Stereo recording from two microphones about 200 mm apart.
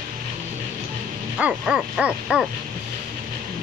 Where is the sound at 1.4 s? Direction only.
5° right (ahead or behind).